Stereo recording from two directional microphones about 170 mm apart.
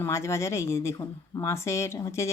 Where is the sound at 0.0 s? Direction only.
15° left (ahead or behind).